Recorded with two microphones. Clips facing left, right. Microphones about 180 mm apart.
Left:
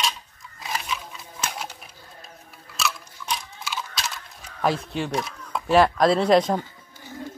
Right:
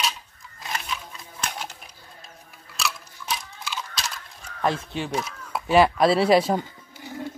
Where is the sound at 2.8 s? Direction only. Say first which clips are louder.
Left 2 dB; centre (ahead or behind).